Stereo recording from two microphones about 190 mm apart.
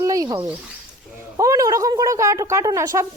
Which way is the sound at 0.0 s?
20° right (ahead or behind).